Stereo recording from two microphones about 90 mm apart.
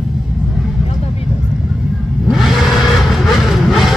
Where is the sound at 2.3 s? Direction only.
Centre (ahead or behind).